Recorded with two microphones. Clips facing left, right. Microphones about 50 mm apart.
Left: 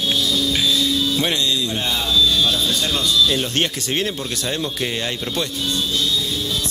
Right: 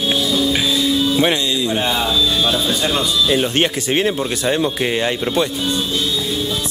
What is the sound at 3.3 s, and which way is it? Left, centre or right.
Speech, centre.